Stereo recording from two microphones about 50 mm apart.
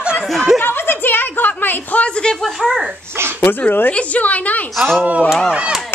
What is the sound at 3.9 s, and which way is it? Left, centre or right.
Speech, left.